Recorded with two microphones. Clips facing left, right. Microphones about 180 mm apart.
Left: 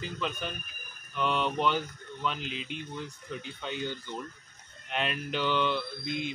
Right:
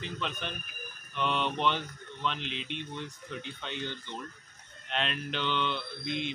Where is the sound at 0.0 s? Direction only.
5° left (ahead or behind).